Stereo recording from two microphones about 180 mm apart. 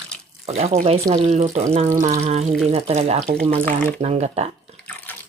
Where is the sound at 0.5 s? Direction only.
35° right (ahead or behind).